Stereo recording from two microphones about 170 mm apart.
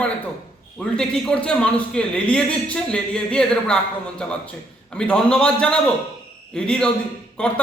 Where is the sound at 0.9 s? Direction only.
5° left (ahead or behind).